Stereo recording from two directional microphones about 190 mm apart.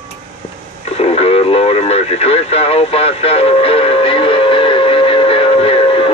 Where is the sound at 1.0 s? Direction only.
30° left (ahead or behind).